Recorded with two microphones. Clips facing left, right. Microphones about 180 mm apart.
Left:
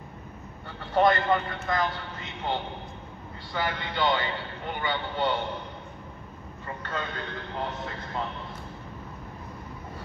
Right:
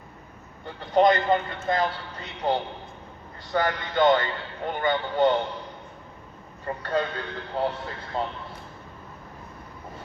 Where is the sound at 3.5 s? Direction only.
45° right (ahead or behind).